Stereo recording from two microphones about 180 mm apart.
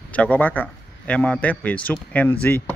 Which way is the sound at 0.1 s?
10° left (ahead or behind).